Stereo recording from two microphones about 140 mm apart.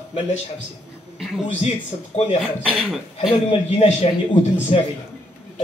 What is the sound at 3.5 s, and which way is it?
A man's voice, 45° left (ahead or behind).